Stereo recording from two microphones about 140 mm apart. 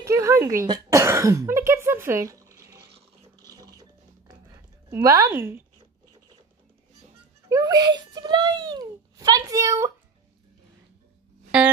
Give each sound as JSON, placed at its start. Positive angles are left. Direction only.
{"t": 0.0, "sound": "speech", "side_deg": -20}
{"t": 3.4, "sound": "a sound", "side_deg": -25}
{"t": 4.9, "sound": "speech", "side_deg": -20}
{"t": 7.4, "sound": "a child's voice", "side_deg": -25}